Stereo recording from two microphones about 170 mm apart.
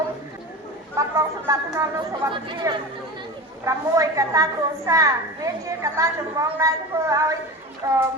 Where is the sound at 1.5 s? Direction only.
20° right (ahead or behind).